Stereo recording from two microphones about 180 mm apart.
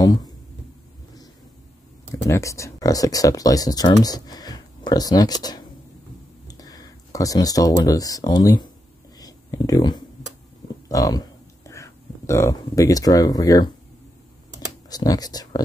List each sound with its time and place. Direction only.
0.0 s speech: 20° left (ahead or behind)
2.2 s speech: 15° left (ahead or behind)
9.2 s a sound: 20° left (ahead or behind)
10.9 s speech: 20° left (ahead or behind)
14.9 s speech: 20° left (ahead or behind)